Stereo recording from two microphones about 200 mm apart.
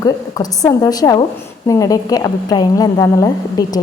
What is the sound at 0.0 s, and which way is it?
A woman's voice, 15° left (ahead or behind).